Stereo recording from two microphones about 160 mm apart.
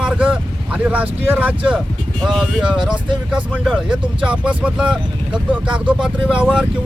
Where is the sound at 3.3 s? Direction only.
5° right (ahead or behind).